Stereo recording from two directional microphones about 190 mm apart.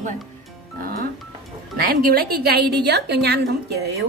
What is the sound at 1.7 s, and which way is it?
A woman's voice, 50° right (ahead or behind).